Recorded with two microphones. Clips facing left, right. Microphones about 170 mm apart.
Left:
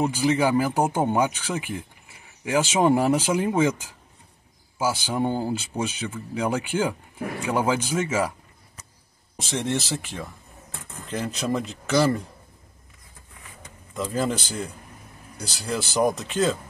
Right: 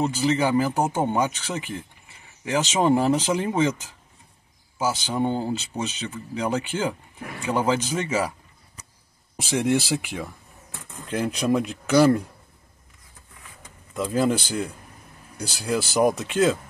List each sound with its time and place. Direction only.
0.0 s speech: 10° left (ahead or behind)
9.4 s speech: 10° right (ahead or behind)
13.9 s speech: 5° right (ahead or behind)